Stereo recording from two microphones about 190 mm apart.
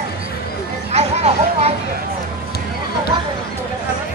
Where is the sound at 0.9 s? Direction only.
35° right (ahead or behind).